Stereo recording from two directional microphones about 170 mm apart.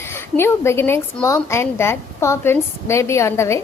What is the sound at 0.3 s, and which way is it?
A woman's voice, 15° left (ahead or behind).